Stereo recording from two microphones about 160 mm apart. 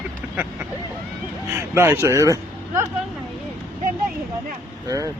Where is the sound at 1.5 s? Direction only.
15° right (ahead or behind).